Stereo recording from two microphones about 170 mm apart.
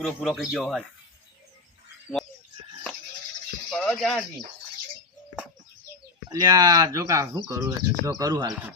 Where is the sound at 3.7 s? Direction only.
5° left (ahead or behind).